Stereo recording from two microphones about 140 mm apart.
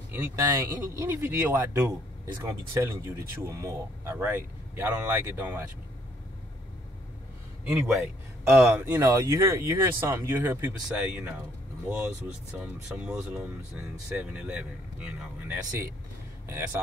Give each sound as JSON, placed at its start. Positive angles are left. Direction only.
{"t": 0.1, "sound": "speech", "side_deg": -15}
{"t": 7.7, "sound": "a man's voice", "side_deg": 0}
{"t": 8.5, "sound": "speech", "side_deg": -15}
{"t": 12.5, "sound": "speech", "side_deg": -5}